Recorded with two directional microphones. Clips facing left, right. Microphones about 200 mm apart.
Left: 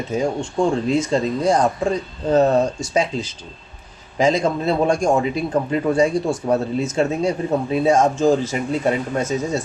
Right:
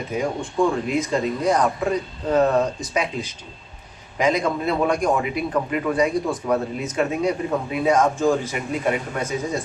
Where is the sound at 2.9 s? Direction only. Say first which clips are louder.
Left 4 dB; 25° left (ahead or behind).